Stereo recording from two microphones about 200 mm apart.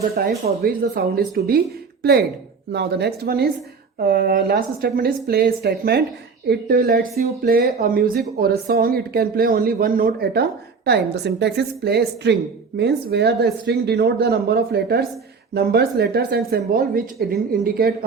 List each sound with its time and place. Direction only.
0.3 s a woman's voice: 50° right (ahead or behind)